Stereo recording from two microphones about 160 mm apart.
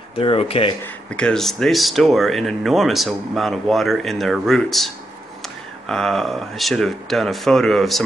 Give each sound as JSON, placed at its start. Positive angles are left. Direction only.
{"t": 0.1, "sound": "speech", "side_deg": 35}
{"t": 1.1, "sound": "speech", "side_deg": 5}